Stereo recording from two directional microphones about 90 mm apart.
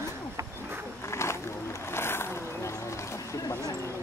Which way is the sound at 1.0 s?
30° left (ahead or behind).